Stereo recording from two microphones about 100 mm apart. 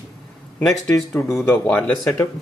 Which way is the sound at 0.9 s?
30° left (ahead or behind).